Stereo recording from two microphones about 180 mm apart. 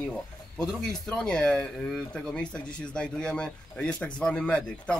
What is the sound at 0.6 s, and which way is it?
Speech, 5° left (ahead or behind).